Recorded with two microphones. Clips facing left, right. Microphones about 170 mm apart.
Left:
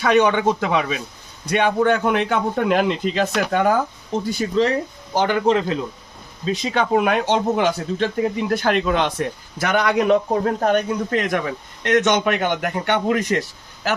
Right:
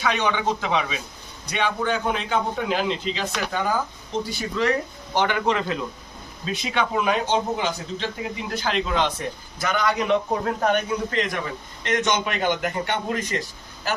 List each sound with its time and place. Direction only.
0.0 s a man's voice: 50° left (ahead or behind)
4.6 s a man's voice: 30° left (ahead or behind)
6.9 s a man's voice: 60° left (ahead or behind)
10.1 s a man's voice: 40° left (ahead or behind); by 13.4 s 65° left (ahead or behind)